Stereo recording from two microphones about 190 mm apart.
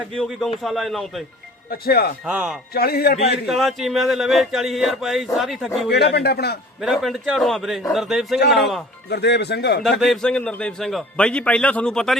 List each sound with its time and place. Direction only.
0.0 s speech: centre (ahead or behind)
1.7 s speech: 55° left (ahead or behind)
2.2 s speech: 5° right (ahead or behind)
2.7 s speech: 55° left (ahead or behind)
3.4 s speech: centre (ahead or behind)
5.9 s speech: 60° left (ahead or behind)
6.8 s speech: centre (ahead or behind)
9.0 s speech: 60° left (ahead or behind)
10.0 s speech: centre (ahead or behind)